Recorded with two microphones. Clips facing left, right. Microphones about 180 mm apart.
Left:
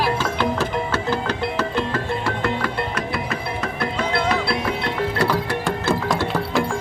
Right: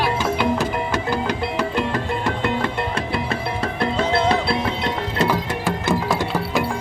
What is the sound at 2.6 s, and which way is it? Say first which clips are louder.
Music: right 1 dB; 30° right (ahead or behind).